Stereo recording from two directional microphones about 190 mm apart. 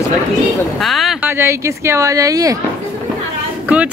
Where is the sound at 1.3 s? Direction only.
15° right (ahead or behind).